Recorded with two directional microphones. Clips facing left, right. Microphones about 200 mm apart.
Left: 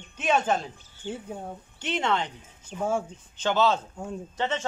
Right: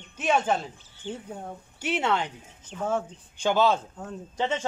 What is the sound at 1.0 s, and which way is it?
Speech, 5° left (ahead or behind).